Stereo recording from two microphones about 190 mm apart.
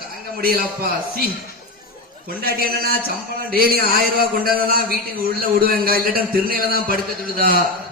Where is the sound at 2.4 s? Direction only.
50° right (ahead or behind).